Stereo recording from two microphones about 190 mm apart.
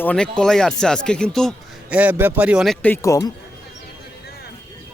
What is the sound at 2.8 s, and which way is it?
Speech, 15° left (ahead or behind).